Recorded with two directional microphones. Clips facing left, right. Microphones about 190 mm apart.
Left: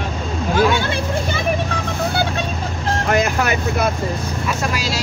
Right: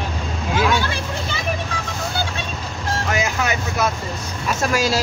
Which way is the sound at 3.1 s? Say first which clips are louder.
Left 5 dB; 55° left (ahead or behind).